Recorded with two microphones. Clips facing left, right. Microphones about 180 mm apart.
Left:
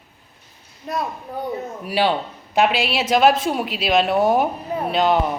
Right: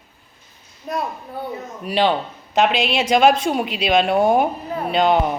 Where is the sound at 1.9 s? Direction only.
5° left (ahead or behind).